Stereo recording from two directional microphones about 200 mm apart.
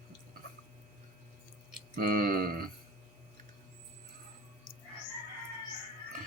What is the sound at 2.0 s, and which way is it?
Tick, 45° right (ahead or behind).